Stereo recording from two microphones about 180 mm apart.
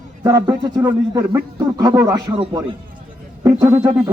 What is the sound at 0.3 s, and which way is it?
Speech, 20° right (ahead or behind).